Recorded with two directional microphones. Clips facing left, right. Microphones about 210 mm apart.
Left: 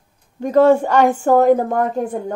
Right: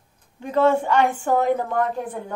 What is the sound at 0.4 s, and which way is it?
A woman's voice, 40° left (ahead or behind).